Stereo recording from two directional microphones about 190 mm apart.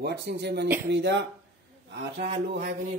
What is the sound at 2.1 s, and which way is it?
Speech, 40° right (ahead or behind).